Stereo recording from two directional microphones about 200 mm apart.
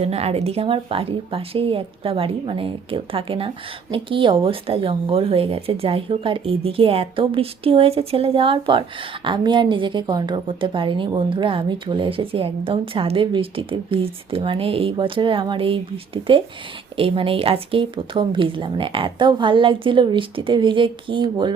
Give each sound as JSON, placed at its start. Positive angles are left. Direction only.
{"t": 0.0, "sound": "a woman's voice", "side_deg": -30}